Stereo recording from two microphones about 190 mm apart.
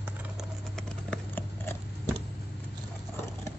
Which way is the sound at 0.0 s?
Centre (ahead or behind).